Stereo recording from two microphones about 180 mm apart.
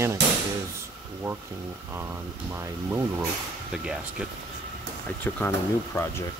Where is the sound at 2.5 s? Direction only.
15° right (ahead or behind).